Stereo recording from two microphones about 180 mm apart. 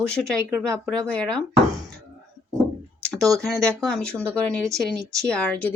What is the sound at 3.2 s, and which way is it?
Speech, 20° right (ahead or behind).